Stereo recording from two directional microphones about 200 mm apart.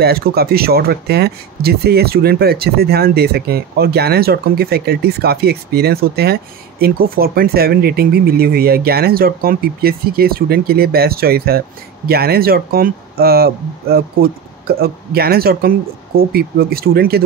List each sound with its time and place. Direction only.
0.0 s speech: 50° right (ahead or behind)